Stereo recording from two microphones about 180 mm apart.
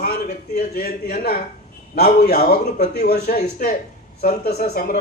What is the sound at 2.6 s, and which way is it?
Speech, 40° left (ahead or behind).